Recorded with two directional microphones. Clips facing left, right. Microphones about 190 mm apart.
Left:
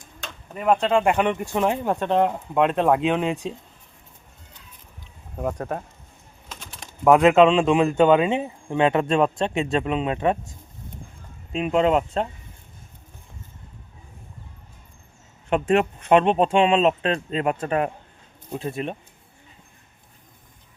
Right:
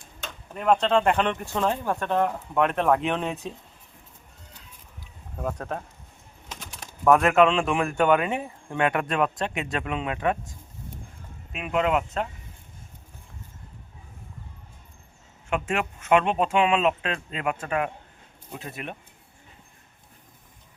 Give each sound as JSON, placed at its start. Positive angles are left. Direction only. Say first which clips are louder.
{"t": 0.5, "sound": "speech", "louder": "left 1 dB", "side_deg": 5}
{"t": 5.4, "sound": "speech", "louder": "left 4 dB", "side_deg": 10}
{"t": 6.5, "sound": "bird", "louder": "even", "side_deg": -10}
{"t": 7.0, "sound": "a man's voice", "louder": "left 4 dB", "side_deg": 20}
{"t": 11.5, "sound": "a man's voice", "louder": "left 5 dB", "side_deg": 30}
{"t": 15.4, "sound": "a man's voice", "louder": "left 7 dB", "side_deg": 35}